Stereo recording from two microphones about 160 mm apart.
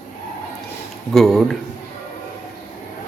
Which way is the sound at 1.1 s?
Centre (ahead or behind).